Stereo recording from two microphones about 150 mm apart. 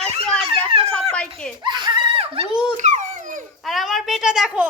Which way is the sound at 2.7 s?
55° right (ahead or behind).